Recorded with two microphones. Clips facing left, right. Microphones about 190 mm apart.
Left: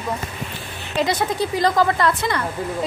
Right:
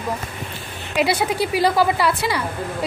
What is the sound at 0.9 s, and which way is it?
A woman's voice, 10° right (ahead or behind).